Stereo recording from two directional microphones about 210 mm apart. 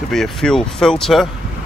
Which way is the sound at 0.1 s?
Centre (ahead or behind).